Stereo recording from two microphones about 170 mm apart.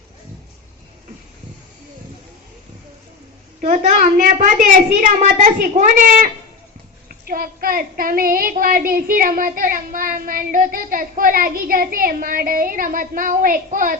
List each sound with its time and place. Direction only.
3.6 s a woman's voice: 45° right (ahead or behind)
7.3 s child singing: 60° right (ahead or behind)